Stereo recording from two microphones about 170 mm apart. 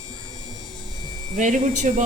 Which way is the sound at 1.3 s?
50° right (ahead or behind).